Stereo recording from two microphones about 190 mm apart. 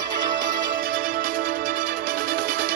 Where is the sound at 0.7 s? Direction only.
50° right (ahead or behind).